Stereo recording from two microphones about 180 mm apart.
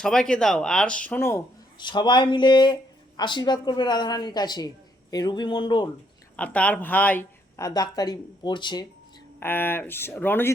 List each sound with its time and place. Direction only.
0.0 s speech: 5° left (ahead or behind)
1.8 s a woman's voice: 25° left (ahead or behind)
6.3 s speech: 5° left (ahead or behind); by 8.9 s 25° left (ahead or behind)
9.4 s speech: 10° left (ahead or behind)